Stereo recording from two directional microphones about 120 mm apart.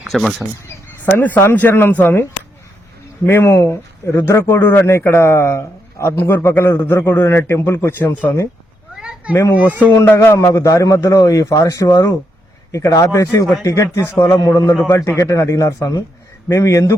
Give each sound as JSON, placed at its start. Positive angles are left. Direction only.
{"t": 0.0, "sound": "speech", "side_deg": 0}
{"t": 0.7, "sound": "speech", "side_deg": 15}
{"t": 3.2, "sound": "speech", "side_deg": 20}
{"t": 9.0, "sound": "a sound", "side_deg": -5}
{"t": 9.3, "sound": "speech", "side_deg": 25}